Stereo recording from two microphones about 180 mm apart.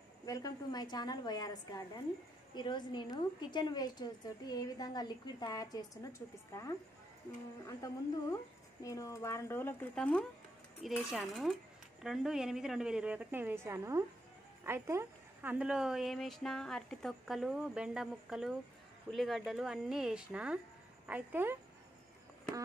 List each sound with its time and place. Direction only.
0.3 s a woman's voice: 20° left (ahead or behind)
7.6 s a woman's voice: 15° left (ahead or behind); by 21.5 s 10° right (ahead or behind)